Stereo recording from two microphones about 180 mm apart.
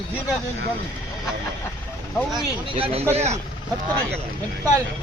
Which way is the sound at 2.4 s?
30° right (ahead or behind).